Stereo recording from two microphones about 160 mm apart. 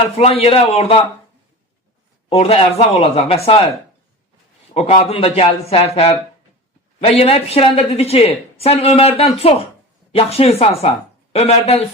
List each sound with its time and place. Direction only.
0.2 s a woman's voice: 40° left (ahead or behind)
2.3 s a woman's voice: 40° left (ahead or behind)
4.7 s a woman's voice: 40° left (ahead or behind)